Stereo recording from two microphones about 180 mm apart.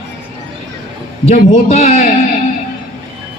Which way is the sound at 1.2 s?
35° left (ahead or behind).